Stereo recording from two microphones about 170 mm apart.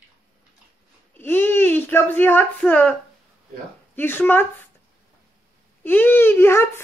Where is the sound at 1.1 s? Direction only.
10° left (ahead or behind).